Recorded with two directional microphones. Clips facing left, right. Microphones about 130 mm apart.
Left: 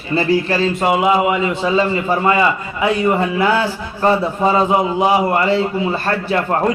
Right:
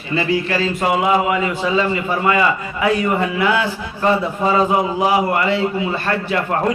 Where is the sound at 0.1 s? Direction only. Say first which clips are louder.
Left 3 dB; 35° left (ahead or behind).